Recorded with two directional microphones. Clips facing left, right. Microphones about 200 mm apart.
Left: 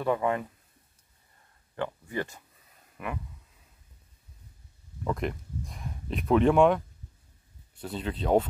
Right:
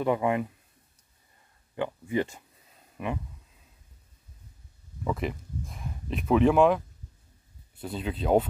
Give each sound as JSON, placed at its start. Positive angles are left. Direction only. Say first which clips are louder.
{"t": 0.0, "sound": "speech", "louder": "right 2 dB", "side_deg": -15}
{"t": 1.8, "sound": "speech", "louder": "right 4 dB", "side_deg": -15}
{"t": 5.0, "sound": "speech", "louder": "even", "side_deg": -5}
{"t": 7.8, "sound": "speech", "louder": "right 1 dB", "side_deg": -5}